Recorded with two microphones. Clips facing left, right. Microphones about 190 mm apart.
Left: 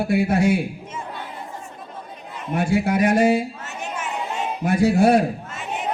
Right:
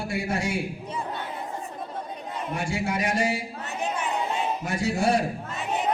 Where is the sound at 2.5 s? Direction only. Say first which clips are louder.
Left 9 dB; 60° left (ahead or behind).